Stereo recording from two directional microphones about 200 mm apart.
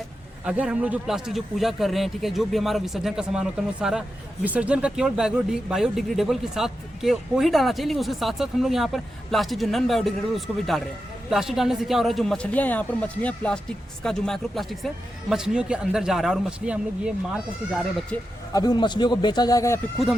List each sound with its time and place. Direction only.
0.4 s speech: 5° right (ahead or behind)
18.5 s a man's voice: 20° left (ahead or behind)